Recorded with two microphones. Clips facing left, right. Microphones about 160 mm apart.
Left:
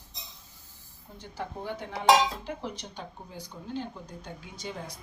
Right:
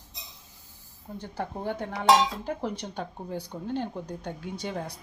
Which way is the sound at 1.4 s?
55° right (ahead or behind).